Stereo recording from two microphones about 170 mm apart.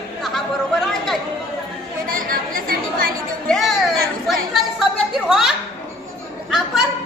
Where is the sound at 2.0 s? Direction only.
55° right (ahead or behind).